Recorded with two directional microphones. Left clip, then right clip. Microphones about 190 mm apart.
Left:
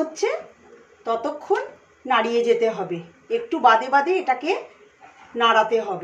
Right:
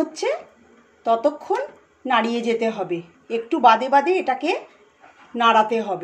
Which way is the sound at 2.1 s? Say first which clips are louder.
Left 2 dB; 45° right (ahead or behind).